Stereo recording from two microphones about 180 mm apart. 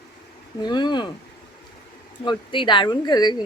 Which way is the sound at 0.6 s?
25° left (ahead or behind).